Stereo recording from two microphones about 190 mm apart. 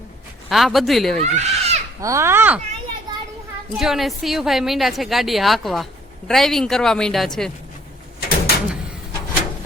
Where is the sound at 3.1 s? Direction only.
20° right (ahead or behind).